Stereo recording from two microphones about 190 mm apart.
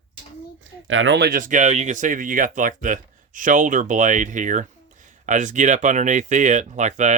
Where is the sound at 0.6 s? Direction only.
90° right.